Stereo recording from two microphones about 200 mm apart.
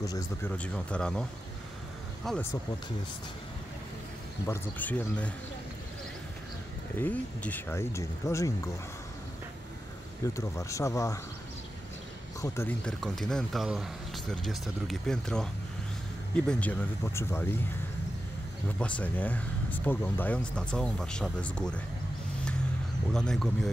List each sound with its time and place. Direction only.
0.0 s speech: 20° left (ahead or behind)
0.5 s speech: 5° left (ahead or behind)
2.3 s speech: centre (ahead or behind)
4.5 s speech: 10° left (ahead or behind)
7.0 s speech: 10° left (ahead or behind)
10.2 s speech: 15° left (ahead or behind)
12.4 s speech: 10° left (ahead or behind)
18.8 s speech: 5° left (ahead or behind)
23.1 s speech: centre (ahead or behind)